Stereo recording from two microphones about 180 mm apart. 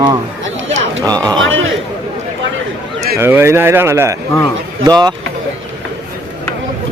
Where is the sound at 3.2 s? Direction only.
15° right (ahead or behind).